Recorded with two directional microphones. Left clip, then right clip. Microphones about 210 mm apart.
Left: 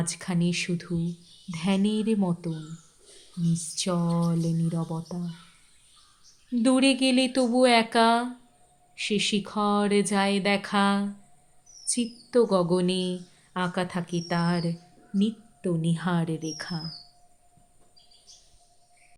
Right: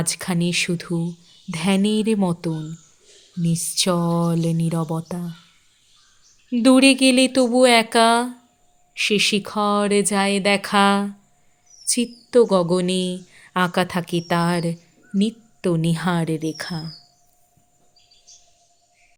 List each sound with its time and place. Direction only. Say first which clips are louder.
0.0 s speech: right 6 dB; 40° right (ahead or behind)
6.5 s speech: right 8 dB; 40° right (ahead or behind)